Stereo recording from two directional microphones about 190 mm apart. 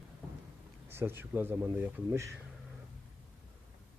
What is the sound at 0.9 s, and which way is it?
Speech, 10° right (ahead or behind).